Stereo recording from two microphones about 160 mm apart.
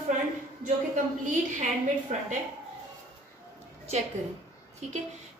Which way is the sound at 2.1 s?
50° right (ahead or behind).